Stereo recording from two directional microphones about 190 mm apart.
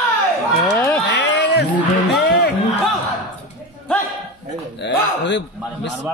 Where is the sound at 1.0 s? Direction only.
65° left (ahead or behind).